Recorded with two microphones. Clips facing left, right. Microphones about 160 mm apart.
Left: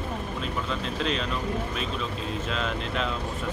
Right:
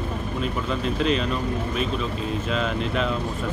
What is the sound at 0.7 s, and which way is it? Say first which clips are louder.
Speech: right 7 dB; 5° right (ahead or behind).